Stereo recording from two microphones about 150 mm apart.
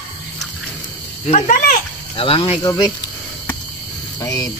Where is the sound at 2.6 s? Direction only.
25° left (ahead or behind).